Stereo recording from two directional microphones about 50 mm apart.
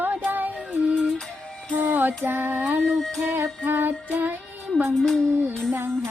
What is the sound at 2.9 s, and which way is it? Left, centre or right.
Music, centre.